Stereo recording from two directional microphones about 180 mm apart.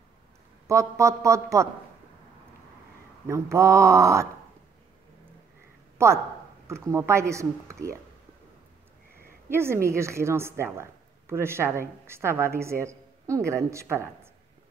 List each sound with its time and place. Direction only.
0.7 s a woman's voice: 15° right (ahead or behind)
3.3 s a woman's voice: 15° right (ahead or behind)
5.9 s a woman's voice: 15° right (ahead or behind)
9.5 s a woman's voice: 15° right (ahead or behind)